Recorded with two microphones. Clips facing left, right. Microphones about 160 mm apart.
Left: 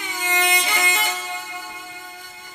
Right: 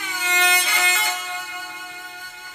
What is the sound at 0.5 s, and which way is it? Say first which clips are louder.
Vehicle: left 1 dB; 20° left (ahead or behind).